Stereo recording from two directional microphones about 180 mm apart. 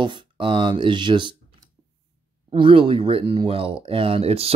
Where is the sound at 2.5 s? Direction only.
30° right (ahead or behind).